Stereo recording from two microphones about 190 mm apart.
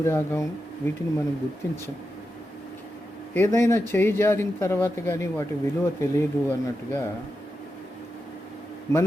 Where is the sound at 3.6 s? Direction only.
15° left (ahead or behind).